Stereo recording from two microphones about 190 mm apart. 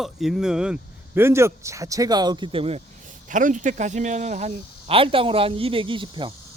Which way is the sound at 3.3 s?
40° right (ahead or behind).